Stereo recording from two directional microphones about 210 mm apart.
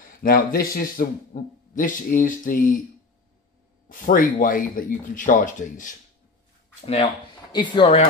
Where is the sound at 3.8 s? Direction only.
40° left (ahead or behind).